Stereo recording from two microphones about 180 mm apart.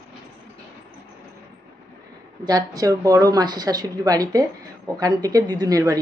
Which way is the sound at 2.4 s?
20° right (ahead or behind).